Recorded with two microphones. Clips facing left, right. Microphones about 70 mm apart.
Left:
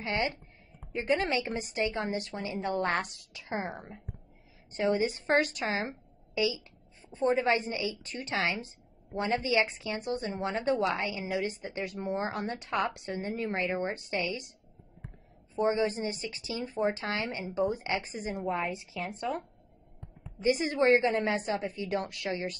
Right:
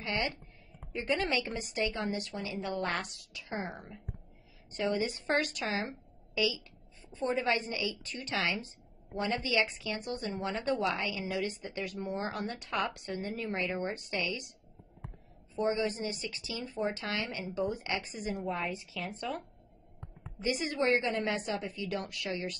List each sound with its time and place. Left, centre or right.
0.0 s a woman's voice: left
15.5 s a woman's voice: left